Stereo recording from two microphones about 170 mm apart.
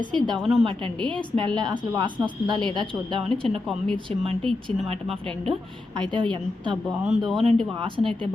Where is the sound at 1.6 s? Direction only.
25° right (ahead or behind).